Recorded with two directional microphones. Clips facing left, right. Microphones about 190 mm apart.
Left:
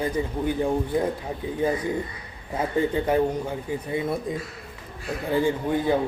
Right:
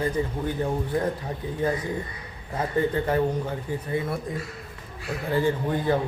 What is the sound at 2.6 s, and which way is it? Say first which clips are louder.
Speech: left 1 dB; 15° left (ahead or behind).